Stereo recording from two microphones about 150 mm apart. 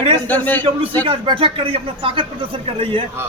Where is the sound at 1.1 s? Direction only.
35° right (ahead or behind).